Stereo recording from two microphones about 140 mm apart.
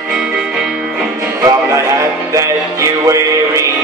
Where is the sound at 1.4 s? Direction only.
25° right (ahead or behind).